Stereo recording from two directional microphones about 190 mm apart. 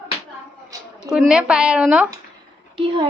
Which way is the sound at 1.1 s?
5° right (ahead or behind).